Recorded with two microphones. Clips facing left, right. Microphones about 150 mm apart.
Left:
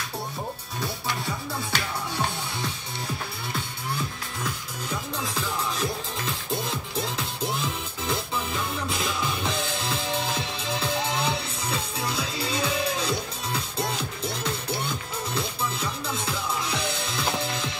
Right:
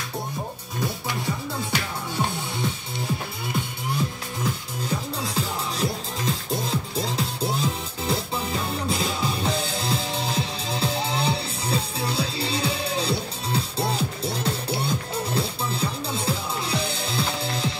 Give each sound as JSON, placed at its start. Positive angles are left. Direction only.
{"t": 5.2, "sound": "music", "side_deg": -35}